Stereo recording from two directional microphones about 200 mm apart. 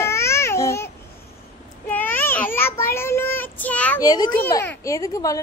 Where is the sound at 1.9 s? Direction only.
10° left (ahead or behind).